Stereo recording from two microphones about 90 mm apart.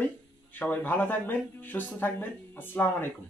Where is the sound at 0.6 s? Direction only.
20° left (ahead or behind).